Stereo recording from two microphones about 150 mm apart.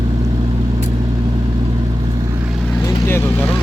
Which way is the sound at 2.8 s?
15° left (ahead or behind).